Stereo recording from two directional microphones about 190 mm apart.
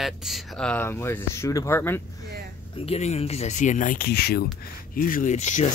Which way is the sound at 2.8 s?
35° left (ahead or behind).